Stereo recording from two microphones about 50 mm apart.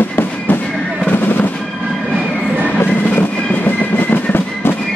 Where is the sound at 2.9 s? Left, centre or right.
Left.